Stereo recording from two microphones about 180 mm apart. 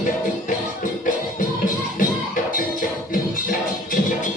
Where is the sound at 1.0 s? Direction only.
45° left (ahead or behind).